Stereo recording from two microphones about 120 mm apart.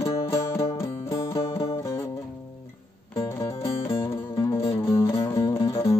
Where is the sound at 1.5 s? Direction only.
50° left (ahead or behind).